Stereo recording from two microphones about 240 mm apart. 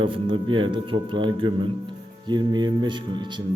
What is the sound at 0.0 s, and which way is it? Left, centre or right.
A man's voice, right.